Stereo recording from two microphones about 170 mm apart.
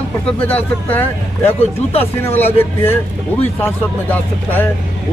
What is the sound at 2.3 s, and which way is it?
Speech, 15° left (ahead or behind).